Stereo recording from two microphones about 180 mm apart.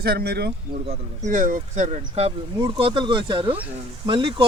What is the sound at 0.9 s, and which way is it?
Speech, 45° right (ahead or behind).